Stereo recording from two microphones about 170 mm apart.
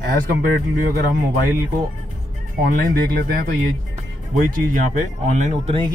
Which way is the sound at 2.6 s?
60° right (ahead or behind).